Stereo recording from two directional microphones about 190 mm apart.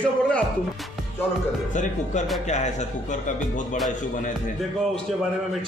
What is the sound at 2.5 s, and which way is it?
Speech, 40° left (ahead or behind).